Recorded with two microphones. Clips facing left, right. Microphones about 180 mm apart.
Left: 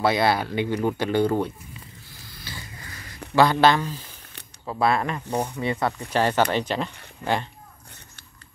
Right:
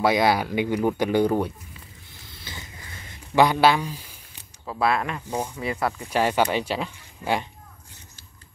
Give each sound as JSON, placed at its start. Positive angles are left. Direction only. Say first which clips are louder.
{"t": 0.0, "sound": "speech", "louder": "right 1 dB", "side_deg": -10}
{"t": 2.2, "sound": "a sound", "louder": "left 1 dB", "side_deg": -20}
{"t": 3.5, "sound": "speech", "louder": "left 1 dB", "side_deg": -10}